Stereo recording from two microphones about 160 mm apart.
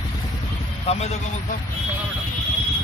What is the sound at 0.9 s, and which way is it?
Speech, 40° left (ahead or behind).